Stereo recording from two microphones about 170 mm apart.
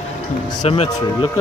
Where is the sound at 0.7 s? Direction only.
35° left (ahead or behind).